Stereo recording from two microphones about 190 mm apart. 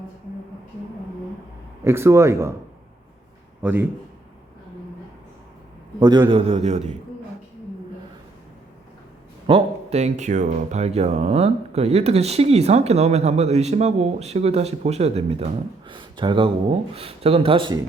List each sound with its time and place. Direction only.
1.8 s speech: 15° right (ahead or behind)
3.6 s speech: 10° right (ahead or behind)
6.0 s speech: 20° right (ahead or behind)
9.5 s speech: 35° right (ahead or behind)